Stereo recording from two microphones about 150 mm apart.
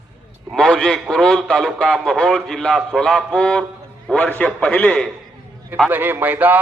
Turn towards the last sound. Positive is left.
turn(degrees=-10)  # may be behind; listen again after turning